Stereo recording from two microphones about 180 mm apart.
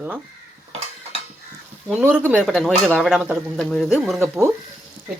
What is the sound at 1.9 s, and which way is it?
Speech, 5° right (ahead or behind).